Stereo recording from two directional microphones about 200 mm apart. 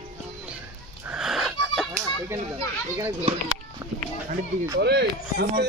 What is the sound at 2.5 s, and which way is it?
A child's voice, 20° right (ahead or behind).